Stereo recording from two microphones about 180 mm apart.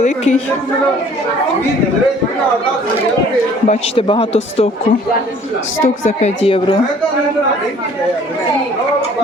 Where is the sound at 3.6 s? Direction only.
35° left (ahead or behind).